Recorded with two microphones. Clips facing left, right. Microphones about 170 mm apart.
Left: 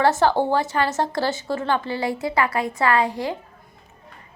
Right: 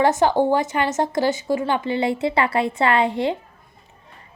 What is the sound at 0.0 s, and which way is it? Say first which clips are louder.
A woman's voice: right 1 dB; 15° right (ahead or behind).